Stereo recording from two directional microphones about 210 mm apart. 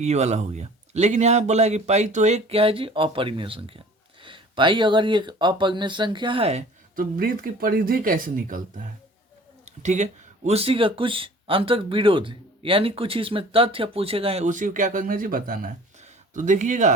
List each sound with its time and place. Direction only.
0.0 s speech: 30° right (ahead or behind)
9.6 s speech: 35° right (ahead or behind)